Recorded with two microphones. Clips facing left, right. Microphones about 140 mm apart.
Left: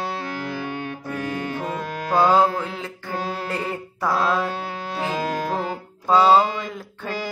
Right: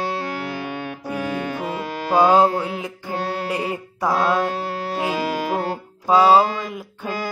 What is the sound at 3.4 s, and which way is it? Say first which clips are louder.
Mantra: right 3 dB; 15° right (ahead or behind).